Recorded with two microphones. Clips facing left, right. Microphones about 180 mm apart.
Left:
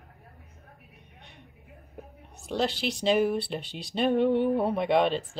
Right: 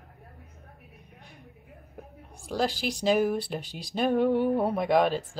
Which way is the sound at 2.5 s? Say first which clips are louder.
Even; 10° right (ahead or behind).